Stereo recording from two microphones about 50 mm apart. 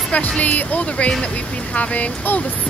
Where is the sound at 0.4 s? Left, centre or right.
Left.